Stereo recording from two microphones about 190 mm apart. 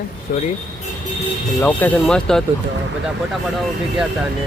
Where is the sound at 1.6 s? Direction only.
10° left (ahead or behind).